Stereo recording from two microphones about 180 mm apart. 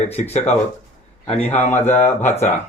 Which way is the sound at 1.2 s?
35° left (ahead or behind).